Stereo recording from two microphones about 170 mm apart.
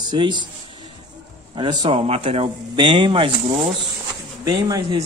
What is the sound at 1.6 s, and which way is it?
Speech, 30° right (ahead or behind).